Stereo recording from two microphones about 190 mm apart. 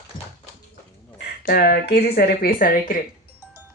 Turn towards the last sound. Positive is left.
turn(degrees=45)  # may be behind; listen again after turning